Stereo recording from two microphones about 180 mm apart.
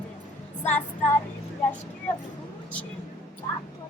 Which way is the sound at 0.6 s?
10° left (ahead or behind).